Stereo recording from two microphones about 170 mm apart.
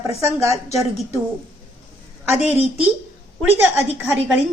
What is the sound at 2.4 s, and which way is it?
Speech, 40° left (ahead or behind).